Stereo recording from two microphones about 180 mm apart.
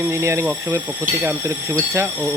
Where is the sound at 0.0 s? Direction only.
15° right (ahead or behind).